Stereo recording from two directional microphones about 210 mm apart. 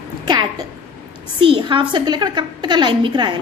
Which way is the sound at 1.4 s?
25° right (ahead or behind).